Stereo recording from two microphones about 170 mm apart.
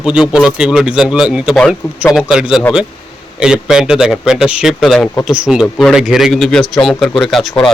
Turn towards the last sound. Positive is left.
turn(degrees=0)  # may be behind; listen again after turning